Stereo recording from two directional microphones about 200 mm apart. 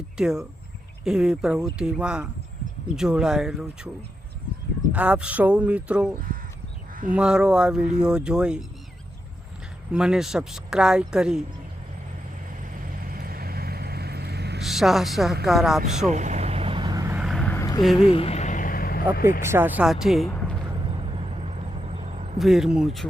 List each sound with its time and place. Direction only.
0.2 s speech: centre (ahead or behind)
4.9 s speech: 5° right (ahead or behind)
9.9 s speech: 5° right (ahead or behind)
12.8 s vehicle: 45° right (ahead or behind)
14.6 s a woman's voice: centre (ahead or behind)
16.0 s vehicle: 35° right (ahead or behind); by 17.2 s 15° right (ahead or behind)
17.2 s vehicle: 5° left (ahead or behind)
18.0 s vehicle: 30° left (ahead or behind); by 19.0 s 45° left (ahead or behind)
19.4 s speech: 10° right (ahead or behind)
20.7 s vehicle: 25° right (ahead or behind)
22.4 s speech: centre (ahead or behind)